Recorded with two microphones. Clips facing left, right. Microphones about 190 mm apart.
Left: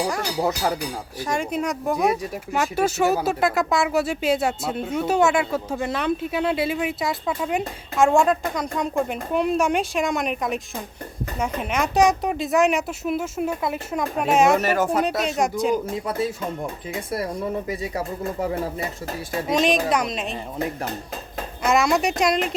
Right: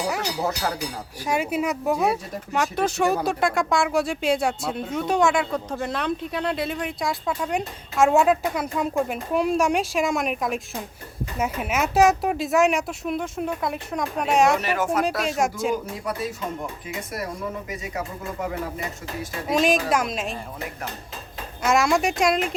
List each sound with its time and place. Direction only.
1.2 s speech: 10° right (ahead or behind)
2.0 s speech: 10° left (ahead or behind)
14.6 s speech: 40° left (ahead or behind)
15.2 s speech: centre (ahead or behind)
17.7 s speech: 35° left (ahead or behind)
19.5 s speech: centre (ahead or behind)
21.6 s speech: centre (ahead or behind)